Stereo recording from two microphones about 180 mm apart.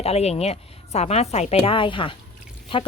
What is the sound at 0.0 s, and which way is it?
Speech, 35° left (ahead or behind).